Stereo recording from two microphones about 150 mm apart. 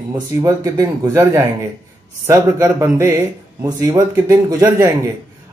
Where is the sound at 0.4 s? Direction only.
25° right (ahead or behind).